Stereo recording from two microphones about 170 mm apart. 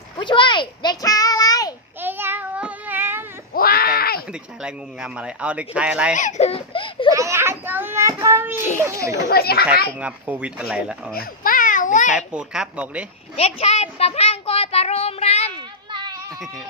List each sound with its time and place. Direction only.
0.2 s a sound: 30° left (ahead or behind)
2.0 s child singing: 10° right (ahead or behind)
3.5 s baby cry: 60° left (ahead or behind)
4.3 s a man's voice: 5° right (ahead or behind)
6.1 s speech: 45° left (ahead or behind)
7.1 s a man's voice: 20° right (ahead or behind)
9.3 s a child's voice: 65° left (ahead or behind)
10.0 s a man's voice: 10° right (ahead or behind)
11.1 s baby cry: 60° left (ahead or behind)
12.1 s a man's voice: 5° right (ahead or behind)
13.3 s a child's voice: 35° left (ahead or behind)
15.5 s a sound: 25° right (ahead or behind)